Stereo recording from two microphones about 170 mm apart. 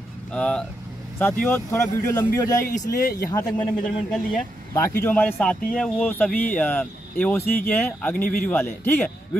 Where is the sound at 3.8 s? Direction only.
5° left (ahead or behind).